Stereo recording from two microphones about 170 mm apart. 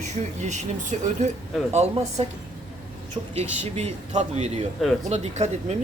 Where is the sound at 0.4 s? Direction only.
45° right (ahead or behind).